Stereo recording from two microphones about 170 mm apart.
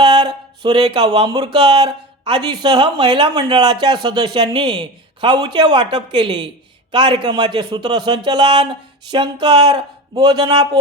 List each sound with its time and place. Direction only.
0.0 s speech: 25° right (ahead or behind)